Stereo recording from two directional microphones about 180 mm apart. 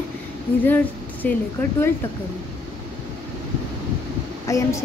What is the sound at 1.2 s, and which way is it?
Speech, 10° left (ahead or behind).